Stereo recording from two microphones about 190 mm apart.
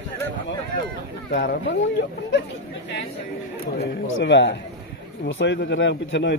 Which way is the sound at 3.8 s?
65° left (ahead or behind).